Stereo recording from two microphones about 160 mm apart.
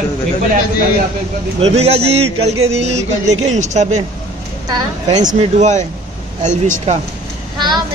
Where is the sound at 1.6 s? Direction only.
40° right (ahead or behind).